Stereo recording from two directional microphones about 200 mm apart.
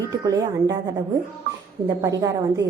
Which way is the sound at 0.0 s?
15° right (ahead or behind).